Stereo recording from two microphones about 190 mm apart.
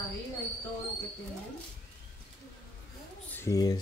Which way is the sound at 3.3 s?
15° left (ahead or behind).